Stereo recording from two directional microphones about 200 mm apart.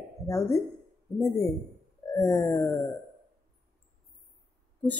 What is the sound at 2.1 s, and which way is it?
Speech, 10° left (ahead or behind).